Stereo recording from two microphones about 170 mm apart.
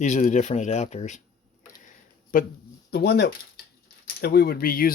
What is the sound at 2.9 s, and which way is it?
Speech, 75° left (ahead or behind).